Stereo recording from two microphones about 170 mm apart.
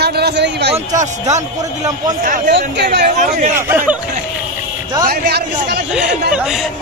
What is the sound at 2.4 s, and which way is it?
Speech, 80° right.